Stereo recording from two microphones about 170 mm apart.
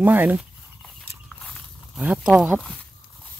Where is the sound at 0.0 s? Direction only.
10° right (ahead or behind).